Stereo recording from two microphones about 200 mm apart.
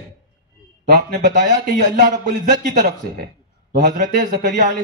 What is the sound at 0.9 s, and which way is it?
Speech, 50° right (ahead or behind).